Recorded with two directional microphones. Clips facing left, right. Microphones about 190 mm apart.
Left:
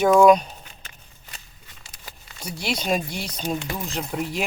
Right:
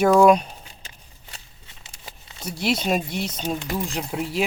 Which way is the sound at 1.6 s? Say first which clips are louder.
Right 2 dB; 25° right (ahead or behind).